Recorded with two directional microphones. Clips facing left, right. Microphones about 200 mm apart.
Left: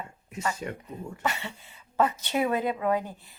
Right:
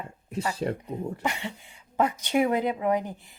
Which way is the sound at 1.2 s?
15° right (ahead or behind).